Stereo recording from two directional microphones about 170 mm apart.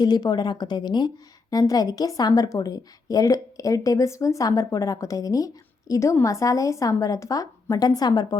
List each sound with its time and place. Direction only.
0.0 s a woman's voice: 25° left (ahead or behind)